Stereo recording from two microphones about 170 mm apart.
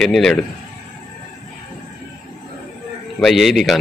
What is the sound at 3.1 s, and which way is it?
Speech, centre (ahead or behind).